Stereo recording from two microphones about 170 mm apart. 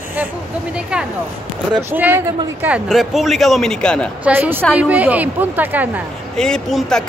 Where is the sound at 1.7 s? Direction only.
15° right (ahead or behind); by 4.1 s 5° left (ahead or behind).